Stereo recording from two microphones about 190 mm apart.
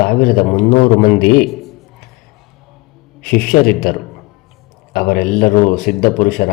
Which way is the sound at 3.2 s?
50° left (ahead or behind).